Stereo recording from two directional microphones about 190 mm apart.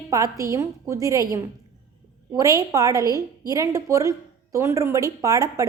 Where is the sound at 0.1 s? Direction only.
15° right (ahead or behind).